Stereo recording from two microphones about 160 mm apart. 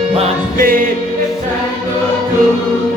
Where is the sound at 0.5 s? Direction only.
60° right (ahead or behind).